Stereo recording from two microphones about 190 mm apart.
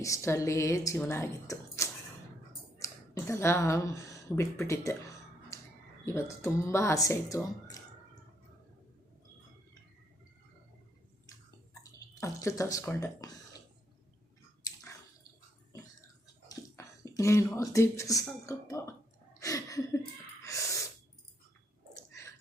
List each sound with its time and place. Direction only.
0.0 s speech: 15° left (ahead or behind)
5.5 s a sound: 15° left (ahead or behind)
6.1 s speech: 15° left (ahead or behind)
11.8 s speech: 20° left (ahead or behind)
14.7 s squish: 20° left (ahead or behind)
16.2 s speech: 20° left (ahead or behind)
19.4 s a sound: 15° left (ahead or behind)
20.4 s gasp: 15° left (ahead or behind)